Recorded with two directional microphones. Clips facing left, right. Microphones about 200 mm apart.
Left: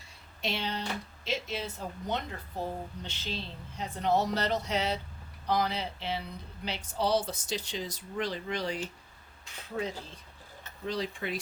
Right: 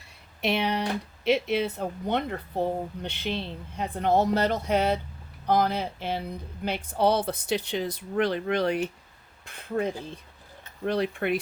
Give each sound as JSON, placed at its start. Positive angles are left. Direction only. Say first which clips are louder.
{"t": 0.4, "sound": "speech", "louder": "right 8 dB", "side_deg": -65}